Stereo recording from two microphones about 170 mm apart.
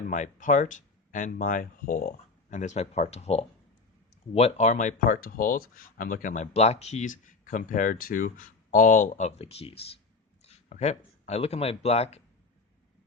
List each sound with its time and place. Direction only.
0.1 s speech: 50° left (ahead or behind)